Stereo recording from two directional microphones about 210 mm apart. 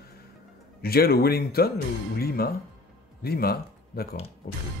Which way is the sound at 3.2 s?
45° left (ahead or behind).